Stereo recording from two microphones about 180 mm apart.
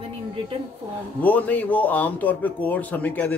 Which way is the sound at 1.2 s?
10° left (ahead or behind).